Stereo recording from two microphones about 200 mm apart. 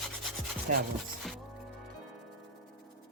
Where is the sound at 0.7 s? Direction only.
45° right (ahead or behind).